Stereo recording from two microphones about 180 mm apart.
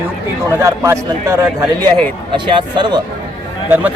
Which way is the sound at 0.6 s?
15° right (ahead or behind).